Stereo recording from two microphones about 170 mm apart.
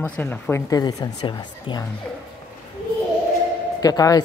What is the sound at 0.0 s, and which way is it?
Speech, 10° left (ahead or behind).